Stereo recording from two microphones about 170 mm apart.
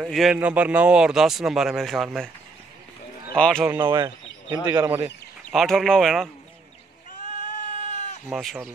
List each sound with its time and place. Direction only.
0.0 s speech: 5° right (ahead or behind)
3.3 s speech: 5° left (ahead or behind)
3.6 s speech: 20° right (ahead or behind); by 6.3 s centre (ahead or behind)
7.2 s sheep: 50° left (ahead or behind)
8.3 s speech: centre (ahead or behind)